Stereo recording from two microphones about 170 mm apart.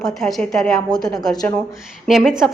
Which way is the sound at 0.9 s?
25° left (ahead or behind).